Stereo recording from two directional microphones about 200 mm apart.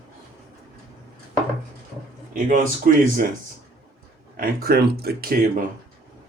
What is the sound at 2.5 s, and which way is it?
Speech, 45° right (ahead or behind).